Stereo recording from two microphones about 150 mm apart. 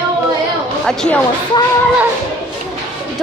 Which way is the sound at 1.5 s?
30° left (ahead or behind).